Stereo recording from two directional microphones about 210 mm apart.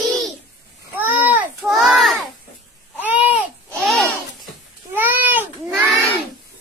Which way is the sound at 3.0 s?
10° right (ahead or behind).